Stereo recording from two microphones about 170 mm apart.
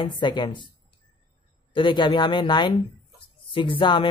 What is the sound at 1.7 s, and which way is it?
Speech, 30° left (ahead or behind).